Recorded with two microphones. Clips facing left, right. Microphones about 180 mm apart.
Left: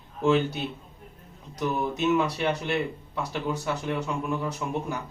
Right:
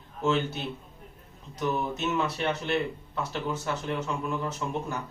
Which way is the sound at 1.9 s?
10° left (ahead or behind).